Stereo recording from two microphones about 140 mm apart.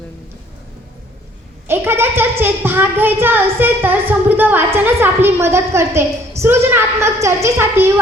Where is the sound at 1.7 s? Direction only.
15° right (ahead or behind).